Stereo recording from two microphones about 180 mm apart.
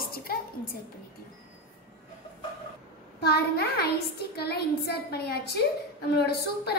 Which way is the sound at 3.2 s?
60° left (ahead or behind).